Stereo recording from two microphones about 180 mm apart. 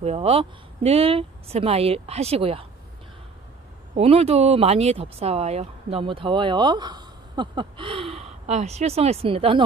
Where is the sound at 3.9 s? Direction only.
35° right (ahead or behind).